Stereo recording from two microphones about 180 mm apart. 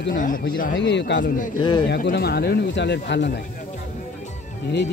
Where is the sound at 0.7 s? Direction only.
75° left (ahead or behind).